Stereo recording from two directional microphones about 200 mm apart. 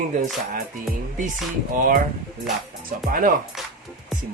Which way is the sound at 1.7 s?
40° right (ahead or behind).